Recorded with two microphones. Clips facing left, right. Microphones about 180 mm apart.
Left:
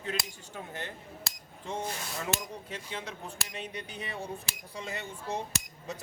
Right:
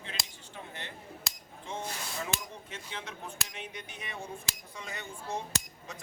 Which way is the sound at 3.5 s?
35° left (ahead or behind).